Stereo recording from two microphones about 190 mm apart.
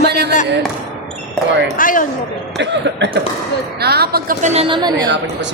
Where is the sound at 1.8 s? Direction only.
45° left (ahead or behind).